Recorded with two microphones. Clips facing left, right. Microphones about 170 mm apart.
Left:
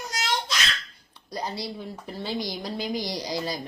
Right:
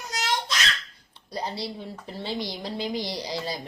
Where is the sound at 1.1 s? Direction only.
25° right (ahead or behind).